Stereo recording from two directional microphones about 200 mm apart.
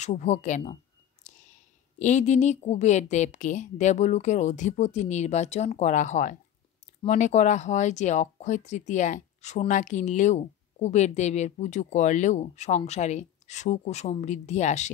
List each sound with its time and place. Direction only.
0.0 s speech: 35° left (ahead or behind)
1.2 s a sound: 35° left (ahead or behind)
2.0 s speech: 35° left (ahead or behind)